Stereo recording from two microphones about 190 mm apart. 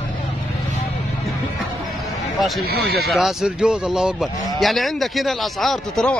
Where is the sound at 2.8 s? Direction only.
55° right (ahead or behind).